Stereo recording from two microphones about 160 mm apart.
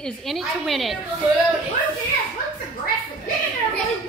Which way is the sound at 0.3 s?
Centre (ahead or behind).